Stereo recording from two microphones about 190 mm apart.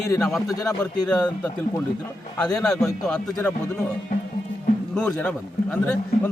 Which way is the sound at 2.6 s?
5° left (ahead or behind).